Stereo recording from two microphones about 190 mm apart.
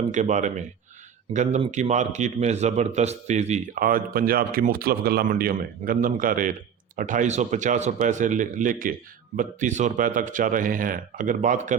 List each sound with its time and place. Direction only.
0.0 s a man's voice: 40° right (ahead or behind)